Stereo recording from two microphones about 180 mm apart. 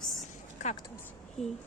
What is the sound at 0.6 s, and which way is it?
Speech, 40° left (ahead or behind).